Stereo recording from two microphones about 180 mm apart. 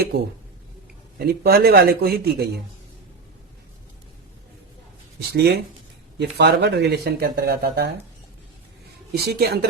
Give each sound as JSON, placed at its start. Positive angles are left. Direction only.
{"t": 1.2, "sound": "speech", "side_deg": -60}
{"t": 5.3, "sound": "speech", "side_deg": -65}
{"t": 9.1, "sound": "speech", "side_deg": -60}